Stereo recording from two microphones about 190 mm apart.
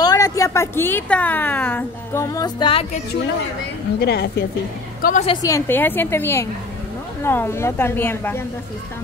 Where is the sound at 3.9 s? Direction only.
60° left (ahead or behind).